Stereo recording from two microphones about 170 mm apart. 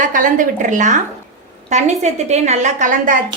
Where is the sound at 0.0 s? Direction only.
50° right (ahead or behind).